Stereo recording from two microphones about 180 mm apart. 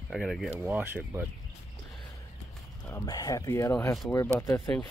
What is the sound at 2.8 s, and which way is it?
Speech, 20° left (ahead or behind).